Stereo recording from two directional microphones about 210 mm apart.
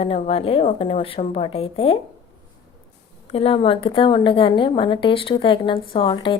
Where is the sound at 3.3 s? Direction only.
25° left (ahead or behind).